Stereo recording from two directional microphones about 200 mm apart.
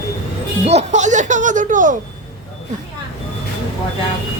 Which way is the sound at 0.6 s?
30° right (ahead or behind).